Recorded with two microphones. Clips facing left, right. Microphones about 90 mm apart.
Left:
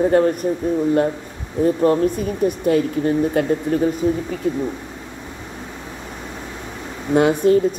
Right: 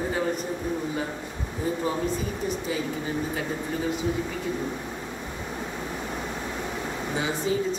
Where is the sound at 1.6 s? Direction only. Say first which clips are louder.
Left 11 dB; 60° left (ahead or behind).